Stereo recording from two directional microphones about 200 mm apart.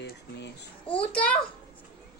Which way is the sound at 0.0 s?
60° left (ahead or behind).